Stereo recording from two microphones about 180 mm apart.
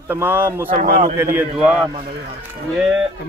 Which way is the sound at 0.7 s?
40° right (ahead or behind).